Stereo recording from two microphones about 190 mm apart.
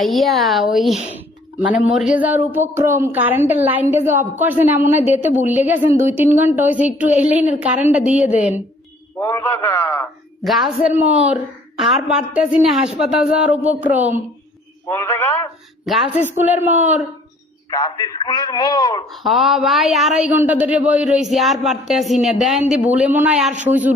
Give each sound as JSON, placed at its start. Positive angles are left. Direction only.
{"t": 0.0, "sound": "a woman's voice", "side_deg": 0}
{"t": 9.1, "sound": "a man's voice", "side_deg": 15}
{"t": 10.4, "sound": "a woman's voice", "side_deg": 0}
{"t": 14.8, "sound": "a man's voice", "side_deg": 15}
{"t": 15.9, "sound": "a woman's voice", "side_deg": 0}
{"t": 17.7, "sound": "a man's voice", "side_deg": 20}
{"t": 19.1, "sound": "a woman's voice", "side_deg": 0}